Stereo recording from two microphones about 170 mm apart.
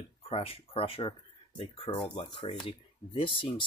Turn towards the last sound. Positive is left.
turn(degrees=30)  # may be behind; listen again after turning